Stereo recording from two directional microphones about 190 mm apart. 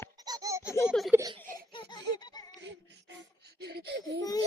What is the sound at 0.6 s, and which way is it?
Baby laughter, 15° left (ahead or behind).